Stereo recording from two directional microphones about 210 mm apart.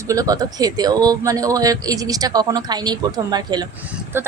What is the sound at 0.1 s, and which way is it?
A woman's voice, 15° right (ahead or behind).